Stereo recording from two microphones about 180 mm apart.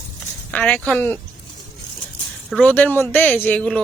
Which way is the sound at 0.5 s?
5° left (ahead or behind).